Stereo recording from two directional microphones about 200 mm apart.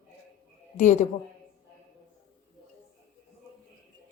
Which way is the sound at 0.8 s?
35° left (ahead or behind).